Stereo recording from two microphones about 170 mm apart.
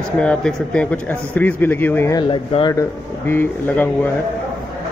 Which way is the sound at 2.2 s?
30° left (ahead or behind).